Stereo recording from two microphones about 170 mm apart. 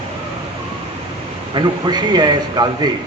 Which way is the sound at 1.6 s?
25° right (ahead or behind).